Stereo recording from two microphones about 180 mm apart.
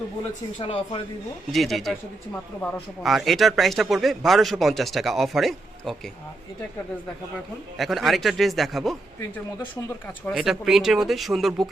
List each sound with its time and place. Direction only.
0.6 s speech: 30° left (ahead or behind)
1.5 s speech: centre (ahead or behind)
7.8 s speech: centre (ahead or behind)
10.3 s speech: centre (ahead or behind)